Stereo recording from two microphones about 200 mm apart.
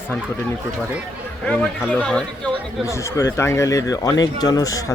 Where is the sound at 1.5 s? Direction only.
5° left (ahead or behind).